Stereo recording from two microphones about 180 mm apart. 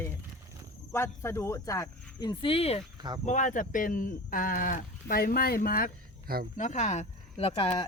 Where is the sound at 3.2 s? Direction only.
45° left (ahead or behind).